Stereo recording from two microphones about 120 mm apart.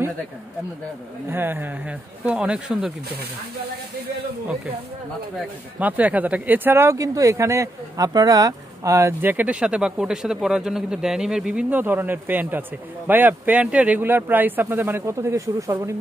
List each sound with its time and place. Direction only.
1.3 s speech: 20° right (ahead or behind)
5.8 s speech: 15° right (ahead or behind)